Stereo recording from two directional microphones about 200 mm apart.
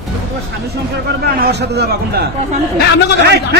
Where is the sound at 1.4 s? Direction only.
55° right (ahead or behind).